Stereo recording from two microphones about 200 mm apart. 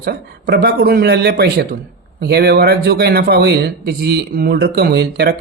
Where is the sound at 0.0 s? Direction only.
55° right (ahead or behind).